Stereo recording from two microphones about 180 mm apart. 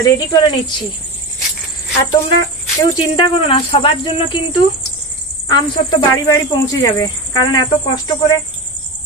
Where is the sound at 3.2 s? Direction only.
30° left (ahead or behind).